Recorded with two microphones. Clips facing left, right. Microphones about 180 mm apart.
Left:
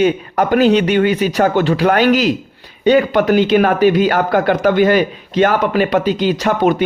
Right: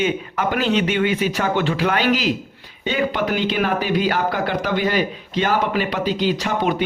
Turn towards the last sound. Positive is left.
turn(degrees=45)  # may be behind; listen again after turning